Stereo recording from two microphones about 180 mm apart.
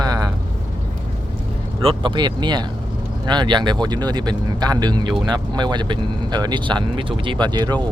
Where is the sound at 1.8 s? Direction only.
30° right (ahead or behind).